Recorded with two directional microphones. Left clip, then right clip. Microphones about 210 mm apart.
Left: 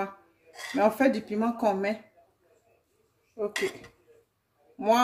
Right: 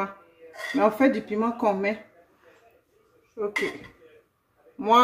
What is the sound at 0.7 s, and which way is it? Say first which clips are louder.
Speech: right 2 dB; 30° left (ahead or behind).